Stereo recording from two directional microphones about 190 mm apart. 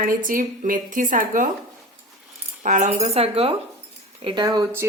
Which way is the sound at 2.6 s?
40° right (ahead or behind).